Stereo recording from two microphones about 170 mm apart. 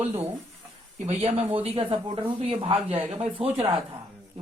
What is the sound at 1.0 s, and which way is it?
Speech, 40° right (ahead or behind).